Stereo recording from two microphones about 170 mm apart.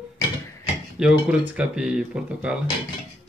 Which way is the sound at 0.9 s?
5° right (ahead or behind).